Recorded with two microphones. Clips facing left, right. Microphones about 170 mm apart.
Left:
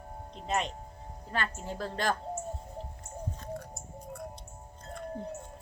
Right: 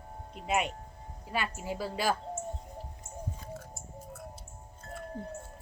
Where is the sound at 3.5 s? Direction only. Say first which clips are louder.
Left 3 dB; 5° right (ahead or behind).